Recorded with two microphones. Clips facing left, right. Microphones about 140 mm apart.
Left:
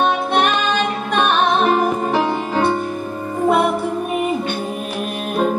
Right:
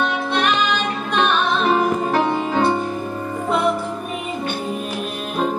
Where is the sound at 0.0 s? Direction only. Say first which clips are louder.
Left 4 dB; 55° left (ahead or behind).